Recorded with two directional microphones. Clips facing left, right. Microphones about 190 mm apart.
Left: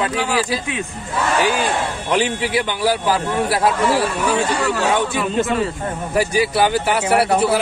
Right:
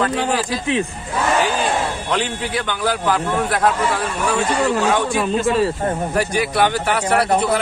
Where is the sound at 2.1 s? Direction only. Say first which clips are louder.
Left 6 dB; 10° left (ahead or behind).